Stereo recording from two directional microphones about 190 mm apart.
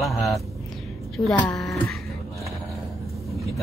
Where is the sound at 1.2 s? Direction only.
15° left (ahead or behind).